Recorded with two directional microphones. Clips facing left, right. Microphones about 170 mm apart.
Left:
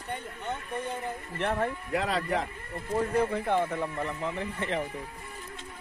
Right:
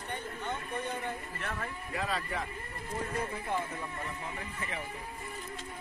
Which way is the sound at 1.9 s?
70° left (ahead or behind).